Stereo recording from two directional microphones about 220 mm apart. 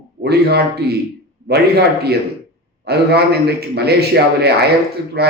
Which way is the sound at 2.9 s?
45° right (ahead or behind).